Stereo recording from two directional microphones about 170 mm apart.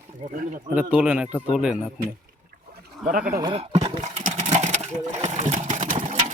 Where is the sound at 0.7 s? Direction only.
10° right (ahead or behind).